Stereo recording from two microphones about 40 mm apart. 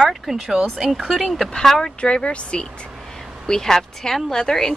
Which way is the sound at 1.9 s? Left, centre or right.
Left.